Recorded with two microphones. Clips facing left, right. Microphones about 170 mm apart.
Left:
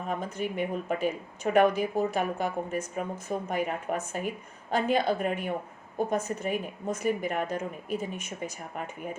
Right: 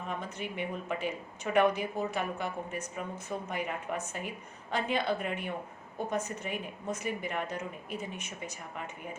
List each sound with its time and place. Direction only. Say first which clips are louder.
0.1 s a woman's voice: left 7 dB; 45° left (ahead or behind)